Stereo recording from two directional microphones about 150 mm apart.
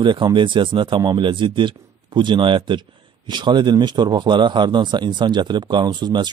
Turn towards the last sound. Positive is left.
turn(degrees=-30)  # may be behind; listen again after turning